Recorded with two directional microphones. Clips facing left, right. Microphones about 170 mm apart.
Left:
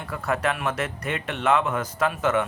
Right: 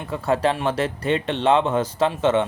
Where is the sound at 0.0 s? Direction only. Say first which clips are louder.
Right 5 dB; 25° right (ahead or behind).